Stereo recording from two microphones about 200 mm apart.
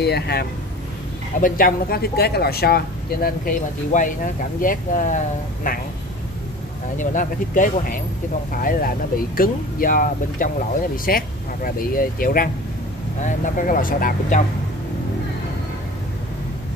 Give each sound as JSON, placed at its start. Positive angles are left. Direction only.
{"t": 0.0, "sound": "speech", "side_deg": 55}
{"t": 7.0, "sound": "speech", "side_deg": 40}